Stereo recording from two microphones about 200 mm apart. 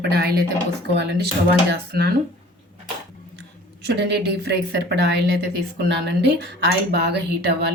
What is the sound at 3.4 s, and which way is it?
A woman's voice, 60° right (ahead or behind).